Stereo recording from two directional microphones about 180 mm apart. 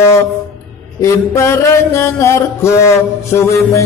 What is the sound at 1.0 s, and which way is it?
Music, 15° left (ahead or behind).